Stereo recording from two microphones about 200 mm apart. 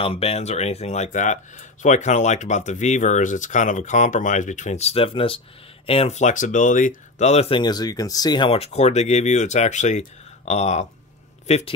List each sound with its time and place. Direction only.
0.0 s speech: 30° left (ahead or behind)